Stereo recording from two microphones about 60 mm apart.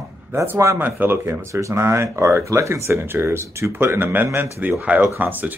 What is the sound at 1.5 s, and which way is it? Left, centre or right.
Speech, right.